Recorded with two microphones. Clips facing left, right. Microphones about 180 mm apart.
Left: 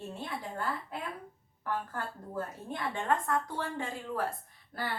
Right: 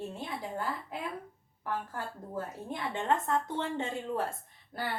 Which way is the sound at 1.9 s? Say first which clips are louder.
Even; 20° right (ahead or behind).